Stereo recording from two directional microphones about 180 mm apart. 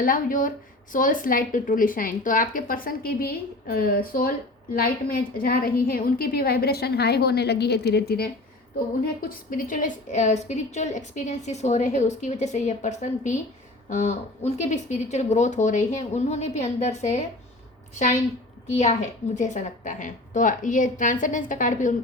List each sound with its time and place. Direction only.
0.0 s a woman's voice: 50° left (ahead or behind)
9.2 s a woman's voice: 50° left (ahead or behind)
18.7 s a woman's voice: 40° left (ahead or behind)